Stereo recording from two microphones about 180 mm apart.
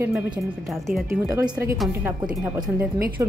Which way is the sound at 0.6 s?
Centre (ahead or behind).